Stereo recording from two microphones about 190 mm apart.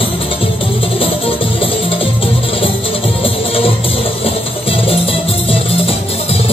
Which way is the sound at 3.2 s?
30° left (ahead or behind).